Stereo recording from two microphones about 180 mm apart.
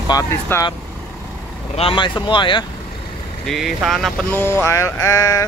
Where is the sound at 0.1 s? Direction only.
15° left (ahead or behind).